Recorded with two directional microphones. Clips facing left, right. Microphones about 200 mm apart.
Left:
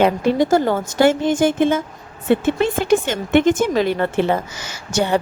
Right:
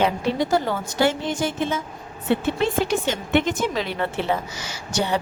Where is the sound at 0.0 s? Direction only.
50° left (ahead or behind).